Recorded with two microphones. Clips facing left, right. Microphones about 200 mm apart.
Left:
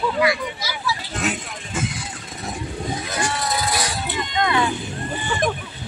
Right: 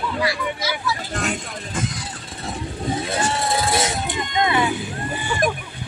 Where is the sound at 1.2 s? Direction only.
5° left (ahead or behind).